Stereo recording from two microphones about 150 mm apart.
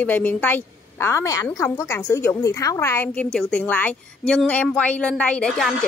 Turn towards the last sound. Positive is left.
turn(degrees=5)  # may be behind; listen again after turning